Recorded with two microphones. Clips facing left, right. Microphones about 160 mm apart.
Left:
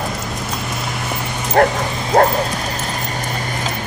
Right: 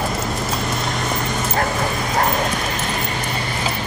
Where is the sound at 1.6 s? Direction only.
55° left (ahead or behind).